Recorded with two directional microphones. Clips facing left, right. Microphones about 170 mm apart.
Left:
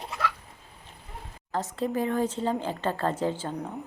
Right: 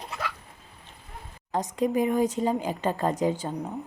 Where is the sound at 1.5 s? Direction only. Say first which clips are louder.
Right 3 dB; 15° right (ahead or behind).